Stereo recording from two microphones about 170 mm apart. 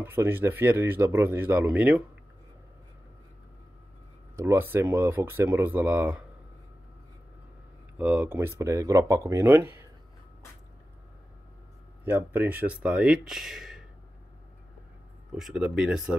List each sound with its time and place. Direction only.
0.0 s speech: 15° right (ahead or behind)
4.4 s speech: 15° right (ahead or behind)
8.0 s speech: 5° right (ahead or behind)
12.0 s speech: 10° right (ahead or behind)
15.3 s speech: centre (ahead or behind)